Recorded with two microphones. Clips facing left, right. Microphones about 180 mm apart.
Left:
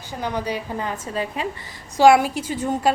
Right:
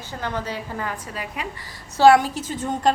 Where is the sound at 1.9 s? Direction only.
15° left (ahead or behind).